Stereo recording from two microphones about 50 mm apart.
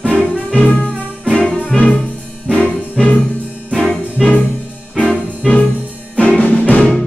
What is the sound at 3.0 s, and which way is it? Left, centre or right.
Music, centre.